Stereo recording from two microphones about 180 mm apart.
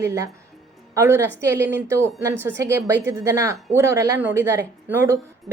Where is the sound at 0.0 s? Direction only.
15° right (ahead or behind).